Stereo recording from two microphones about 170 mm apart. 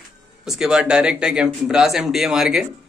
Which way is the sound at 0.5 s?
5° right (ahead or behind).